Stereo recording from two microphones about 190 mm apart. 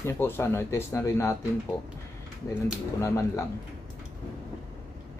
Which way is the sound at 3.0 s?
15° left (ahead or behind).